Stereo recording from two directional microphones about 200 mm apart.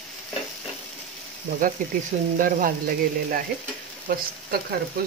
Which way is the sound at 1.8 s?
40° right (ahead or behind).